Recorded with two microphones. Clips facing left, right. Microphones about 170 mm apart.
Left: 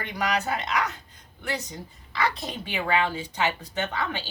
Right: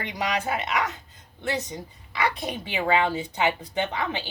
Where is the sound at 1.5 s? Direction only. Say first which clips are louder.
Right 3 dB; 20° right (ahead or behind).